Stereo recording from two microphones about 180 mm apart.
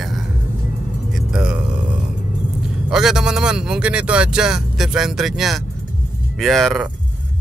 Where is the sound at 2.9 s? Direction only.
5° right (ahead or behind).